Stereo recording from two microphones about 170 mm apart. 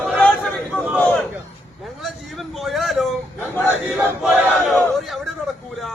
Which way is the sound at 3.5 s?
10° left (ahead or behind).